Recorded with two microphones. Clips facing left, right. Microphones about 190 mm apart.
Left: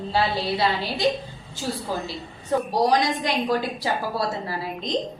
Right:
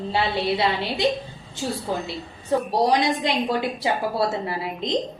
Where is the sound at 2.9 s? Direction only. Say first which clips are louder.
Right 1 dB; 25° right (ahead or behind).